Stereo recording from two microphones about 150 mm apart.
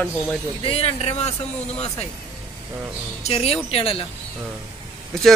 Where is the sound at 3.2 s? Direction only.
40° left (ahead or behind).